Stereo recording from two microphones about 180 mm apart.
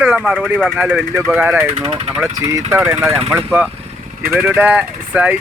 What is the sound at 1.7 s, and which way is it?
Speech, 35° right (ahead or behind).